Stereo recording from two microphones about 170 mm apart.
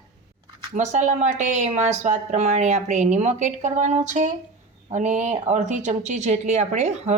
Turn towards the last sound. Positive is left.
turn(degrees=-40)  # may be behind; listen again after turning